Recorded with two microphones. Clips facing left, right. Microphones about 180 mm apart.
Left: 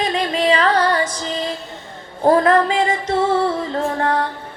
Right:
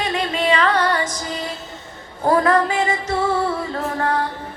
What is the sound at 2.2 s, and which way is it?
Music, 25° left (ahead or behind).